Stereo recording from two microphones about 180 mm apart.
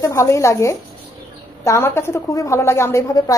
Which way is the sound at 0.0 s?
15° left (ahead or behind).